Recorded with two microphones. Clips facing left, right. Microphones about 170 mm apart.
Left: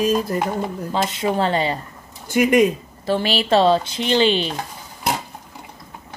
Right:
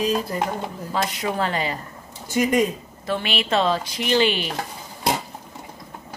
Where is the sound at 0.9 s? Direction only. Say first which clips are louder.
Left 3 dB; 25° left (ahead or behind).